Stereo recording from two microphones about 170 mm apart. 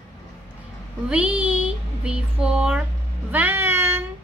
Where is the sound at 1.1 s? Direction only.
10° right (ahead or behind).